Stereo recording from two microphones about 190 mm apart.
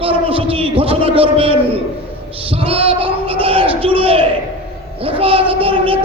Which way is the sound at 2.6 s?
30° right (ahead or behind).